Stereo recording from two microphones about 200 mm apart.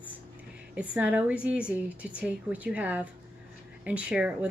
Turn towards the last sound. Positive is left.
turn(degrees=-5)  # may be behind; listen again after turning